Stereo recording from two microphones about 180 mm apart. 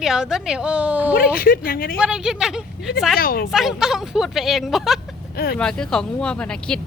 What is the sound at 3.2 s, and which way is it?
Speech, 55° left (ahead or behind).